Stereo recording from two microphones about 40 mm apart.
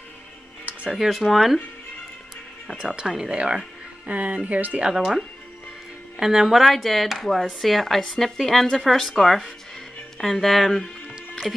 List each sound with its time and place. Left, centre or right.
0.8 s speech: centre
2.8 s speech: centre
4.1 s speech: right
4.9 s speech: centre